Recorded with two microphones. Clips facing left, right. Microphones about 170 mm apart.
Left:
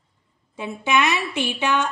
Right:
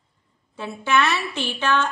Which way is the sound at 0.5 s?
15° left (ahead or behind).